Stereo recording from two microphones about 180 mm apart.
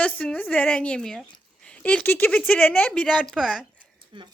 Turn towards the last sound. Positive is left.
turn(degrees=-25)  # may be behind; listen again after turning